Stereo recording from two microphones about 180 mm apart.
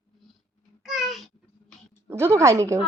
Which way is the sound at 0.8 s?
Centre (ahead or behind).